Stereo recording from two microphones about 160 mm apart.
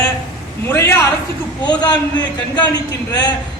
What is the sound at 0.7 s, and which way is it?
Speech, 15° left (ahead or behind).